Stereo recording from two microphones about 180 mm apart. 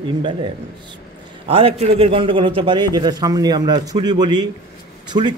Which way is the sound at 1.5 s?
30° right (ahead or behind).